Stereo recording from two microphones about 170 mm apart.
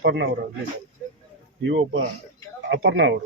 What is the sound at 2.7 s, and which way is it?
Speech, 85° right.